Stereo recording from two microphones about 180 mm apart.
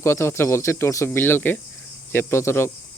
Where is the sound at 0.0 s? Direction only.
15° left (ahead or behind).